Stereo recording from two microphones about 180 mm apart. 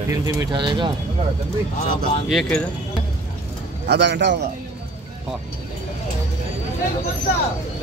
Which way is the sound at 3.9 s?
75° right (ahead or behind).